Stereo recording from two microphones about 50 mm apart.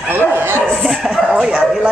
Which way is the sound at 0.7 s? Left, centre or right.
Centre.